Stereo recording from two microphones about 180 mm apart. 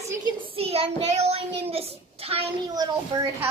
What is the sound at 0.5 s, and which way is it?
Speech, 35° right (ahead or behind).